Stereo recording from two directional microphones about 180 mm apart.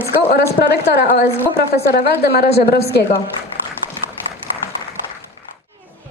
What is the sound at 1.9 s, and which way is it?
Speech, 60° left (ahead or behind).